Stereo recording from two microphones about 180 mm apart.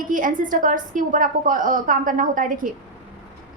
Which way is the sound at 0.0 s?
50° right (ahead or behind).